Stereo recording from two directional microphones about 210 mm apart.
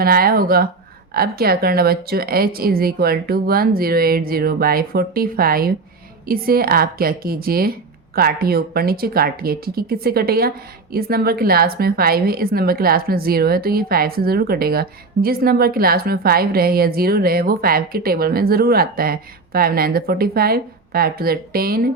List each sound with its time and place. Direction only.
0.0 s a woman's voice: 45° right (ahead or behind)